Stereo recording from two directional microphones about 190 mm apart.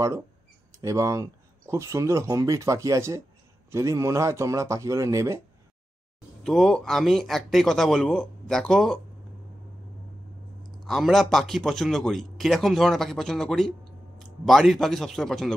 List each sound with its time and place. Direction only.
0.7 s speech: 15° right (ahead or behind)
6.4 s a man's voice: centre (ahead or behind)
10.8 s a man's voice: centre (ahead or behind)